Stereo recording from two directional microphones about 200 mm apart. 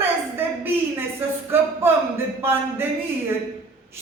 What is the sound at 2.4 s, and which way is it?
Speech, 10° right (ahead or behind).